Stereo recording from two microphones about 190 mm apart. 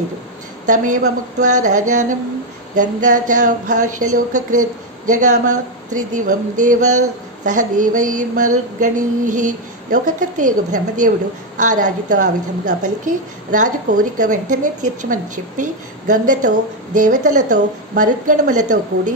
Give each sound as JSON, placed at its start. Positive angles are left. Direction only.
{"t": 0.7, "sound": "a woman's voice", "side_deg": -40}